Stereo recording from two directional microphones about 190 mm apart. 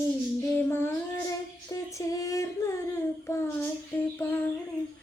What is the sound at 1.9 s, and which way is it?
Female singing, 20° left (ahead or behind).